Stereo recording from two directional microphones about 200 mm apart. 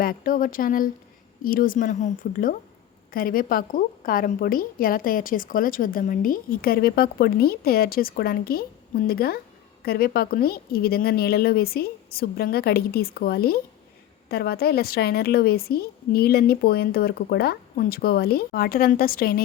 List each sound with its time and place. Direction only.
0.0 s a woman's voice: 45° left (ahead or behind)